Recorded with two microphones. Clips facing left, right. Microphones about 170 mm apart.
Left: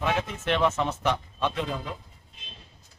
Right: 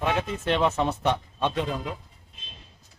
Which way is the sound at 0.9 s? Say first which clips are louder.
Right 2 dB; 25° right (ahead or behind).